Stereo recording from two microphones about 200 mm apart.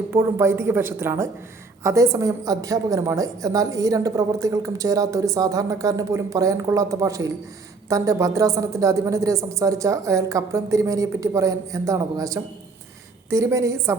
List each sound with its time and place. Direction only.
0.1 s a woman's voice: 10° right (ahead or behind)